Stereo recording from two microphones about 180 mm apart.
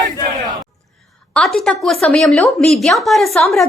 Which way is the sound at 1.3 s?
5° left (ahead or behind).